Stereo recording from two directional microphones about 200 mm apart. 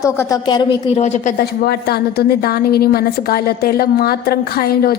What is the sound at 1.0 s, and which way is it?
A woman's voice, 35° left (ahead or behind).